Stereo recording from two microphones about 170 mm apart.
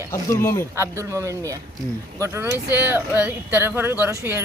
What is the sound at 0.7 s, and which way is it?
Speech, 15° right (ahead or behind).